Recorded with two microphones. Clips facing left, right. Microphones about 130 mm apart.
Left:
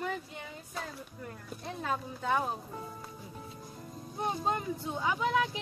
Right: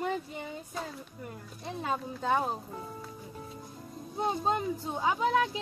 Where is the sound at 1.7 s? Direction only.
5° right (ahead or behind).